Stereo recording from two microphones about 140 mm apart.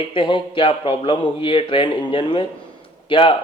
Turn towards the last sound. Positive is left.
turn(degrees=40)  # may be behind; listen again after turning